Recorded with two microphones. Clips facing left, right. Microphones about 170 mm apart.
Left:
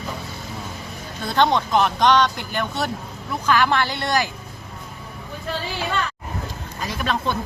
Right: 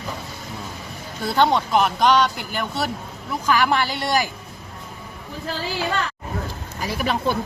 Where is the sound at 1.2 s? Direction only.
10° right (ahead or behind).